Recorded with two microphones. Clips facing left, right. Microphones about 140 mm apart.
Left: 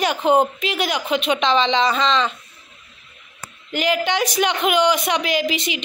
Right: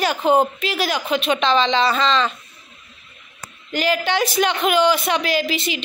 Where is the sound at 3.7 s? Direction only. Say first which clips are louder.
Even; 15° left (ahead or behind).